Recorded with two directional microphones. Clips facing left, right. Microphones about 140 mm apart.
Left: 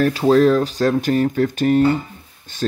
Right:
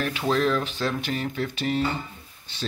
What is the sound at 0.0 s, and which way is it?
Speech, 40° left (ahead or behind).